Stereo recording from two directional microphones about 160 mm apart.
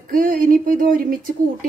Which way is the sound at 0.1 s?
55° right (ahead or behind).